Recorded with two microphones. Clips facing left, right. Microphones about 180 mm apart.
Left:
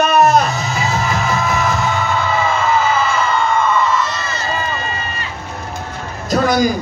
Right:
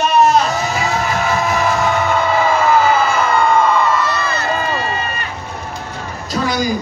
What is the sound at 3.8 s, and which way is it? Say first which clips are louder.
Crowd: right 2 dB; 60° right (ahead or behind).